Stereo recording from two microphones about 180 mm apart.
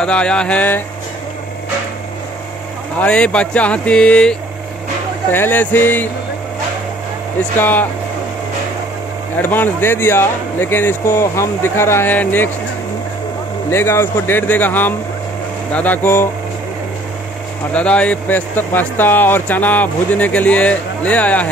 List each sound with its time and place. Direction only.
0.0 s mantra: 5° left (ahead or behind)
3.0 s speech: 5° left (ahead or behind)
7.5 s speech: 10° left (ahead or behind)
9.4 s speech: 10° left (ahead or behind)
13.7 s speech: 15° left (ahead or behind)
17.7 s speech: 5° left (ahead or behind)